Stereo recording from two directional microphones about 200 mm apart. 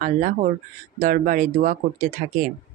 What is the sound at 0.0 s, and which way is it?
A woman's voice, 40° right (ahead or behind).